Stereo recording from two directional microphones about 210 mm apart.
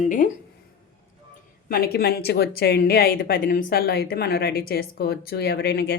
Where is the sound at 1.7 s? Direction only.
45° left (ahead or behind).